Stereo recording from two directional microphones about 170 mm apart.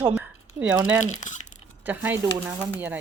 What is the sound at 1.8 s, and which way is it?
Speech, 10° right (ahead or behind).